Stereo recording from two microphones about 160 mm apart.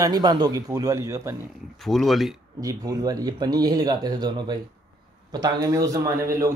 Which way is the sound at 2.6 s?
25° right (ahead or behind).